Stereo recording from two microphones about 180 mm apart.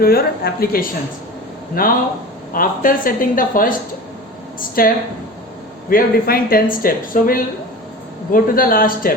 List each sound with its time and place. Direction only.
0.0 s speech: 55° left (ahead or behind)
4.8 s speech: 55° left (ahead or behind)